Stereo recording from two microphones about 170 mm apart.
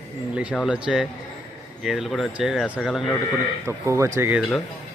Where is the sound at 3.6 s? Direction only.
15° right (ahead or behind).